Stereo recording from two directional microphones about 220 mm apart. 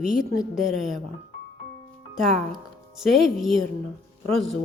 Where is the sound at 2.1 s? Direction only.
Centre (ahead or behind).